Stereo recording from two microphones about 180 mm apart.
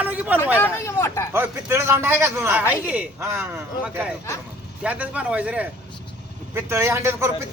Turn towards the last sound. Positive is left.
turn(degrees=-15)  # may be behind; listen again after turning